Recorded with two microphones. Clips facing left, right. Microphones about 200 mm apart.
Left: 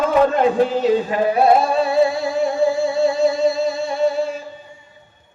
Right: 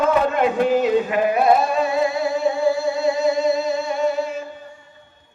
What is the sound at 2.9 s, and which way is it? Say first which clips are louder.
Music: left 2 dB; 30° left (ahead or behind).